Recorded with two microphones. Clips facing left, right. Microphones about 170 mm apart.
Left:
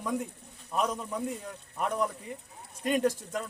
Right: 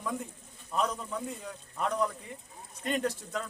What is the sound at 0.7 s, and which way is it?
Speech, 15° left (ahead or behind).